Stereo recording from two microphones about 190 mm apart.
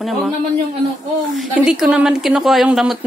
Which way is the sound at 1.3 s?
5° right (ahead or behind).